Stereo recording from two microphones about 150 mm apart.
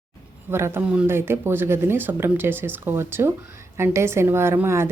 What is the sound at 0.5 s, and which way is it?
A woman's voice, 15° right (ahead or behind).